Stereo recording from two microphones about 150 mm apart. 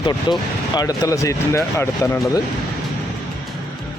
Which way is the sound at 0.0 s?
30° left (ahead or behind).